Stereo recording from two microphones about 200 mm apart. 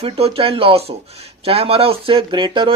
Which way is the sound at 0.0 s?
30° right (ahead or behind).